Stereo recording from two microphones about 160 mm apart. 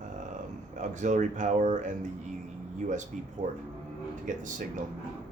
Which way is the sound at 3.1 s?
50° right (ahead or behind).